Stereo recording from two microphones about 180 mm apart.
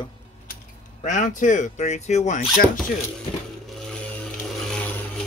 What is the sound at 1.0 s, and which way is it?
Speech, 45° left (ahead or behind).